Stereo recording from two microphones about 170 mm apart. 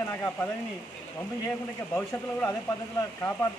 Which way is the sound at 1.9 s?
10° left (ahead or behind).